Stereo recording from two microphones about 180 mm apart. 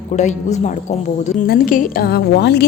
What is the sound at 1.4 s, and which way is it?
A woman's voice, 60° left (ahead or behind).